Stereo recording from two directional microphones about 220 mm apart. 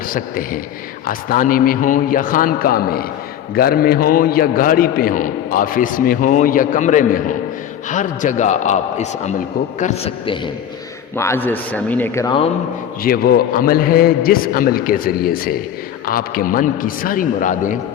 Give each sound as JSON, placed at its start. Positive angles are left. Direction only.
{"t": 0.1, "sound": "a man's voice", "side_deg": 40}
{"t": 11.2, "sound": "speech", "side_deg": 10}
{"t": 13.0, "sound": "a man's voice", "side_deg": 40}